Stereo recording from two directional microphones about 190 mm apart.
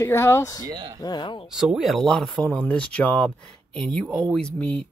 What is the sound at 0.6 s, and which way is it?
Speech, 20° right (ahead or behind).